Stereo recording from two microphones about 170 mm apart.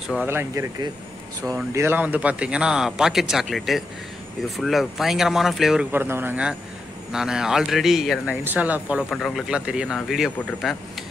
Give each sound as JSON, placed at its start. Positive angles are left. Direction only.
{"t": 0.3, "sound": "speech", "side_deg": -15}